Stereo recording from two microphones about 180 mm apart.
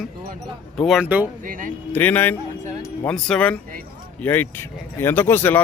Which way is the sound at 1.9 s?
10° left (ahead or behind).